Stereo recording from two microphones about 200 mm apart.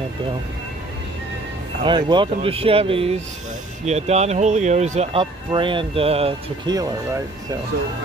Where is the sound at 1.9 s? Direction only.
25° right (ahead or behind).